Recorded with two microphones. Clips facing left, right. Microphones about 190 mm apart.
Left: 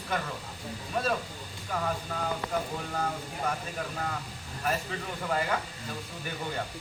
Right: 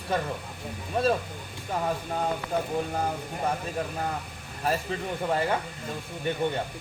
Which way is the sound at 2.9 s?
30° right (ahead or behind).